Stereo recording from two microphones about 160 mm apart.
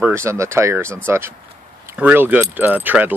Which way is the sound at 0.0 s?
15° right (ahead or behind).